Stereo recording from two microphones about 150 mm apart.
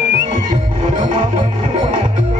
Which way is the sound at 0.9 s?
60° right (ahead or behind).